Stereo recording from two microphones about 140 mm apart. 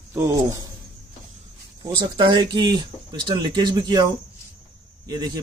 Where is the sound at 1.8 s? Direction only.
30° right (ahead or behind).